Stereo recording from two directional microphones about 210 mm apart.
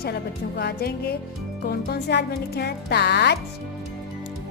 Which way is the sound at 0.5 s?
50° left (ahead or behind).